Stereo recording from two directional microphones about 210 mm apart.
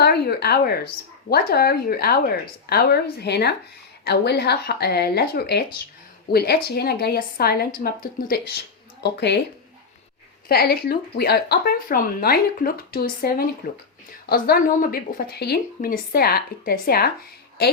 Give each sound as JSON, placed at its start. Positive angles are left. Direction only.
{"t": 0.0, "sound": "a sound", "side_deg": 50}
{"t": 1.3, "sound": "a woman's voice", "side_deg": 45}
{"t": 9.0, "sound": "a woman's voice", "side_deg": 55}
{"t": 10.5, "sound": "a woman's voice", "side_deg": 45}